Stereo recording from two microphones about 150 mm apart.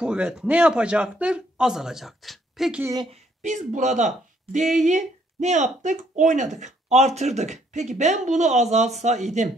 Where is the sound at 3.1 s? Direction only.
55° right (ahead or behind).